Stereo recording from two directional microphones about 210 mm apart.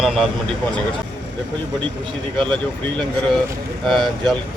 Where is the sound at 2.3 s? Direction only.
25° right (ahead or behind).